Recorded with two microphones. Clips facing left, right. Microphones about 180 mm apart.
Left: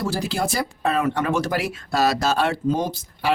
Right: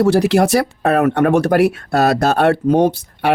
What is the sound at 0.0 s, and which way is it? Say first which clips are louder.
Speech: right 12 dB; 70° right (ahead or behind).